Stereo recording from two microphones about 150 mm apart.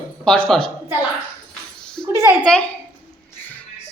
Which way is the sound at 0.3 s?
5° left (ahead or behind).